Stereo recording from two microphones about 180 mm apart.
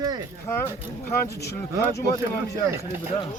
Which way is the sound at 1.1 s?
15° left (ahead or behind).